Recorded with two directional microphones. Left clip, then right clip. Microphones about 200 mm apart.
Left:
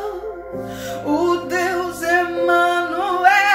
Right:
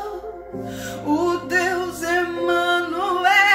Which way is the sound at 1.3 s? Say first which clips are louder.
Left 1 dB; 5° right (ahead or behind).